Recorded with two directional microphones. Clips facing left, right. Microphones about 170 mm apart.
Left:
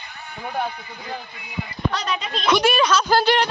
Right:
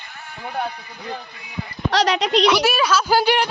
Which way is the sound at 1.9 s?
85° right.